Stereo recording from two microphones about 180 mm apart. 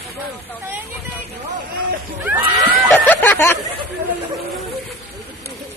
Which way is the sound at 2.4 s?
25° right (ahead or behind).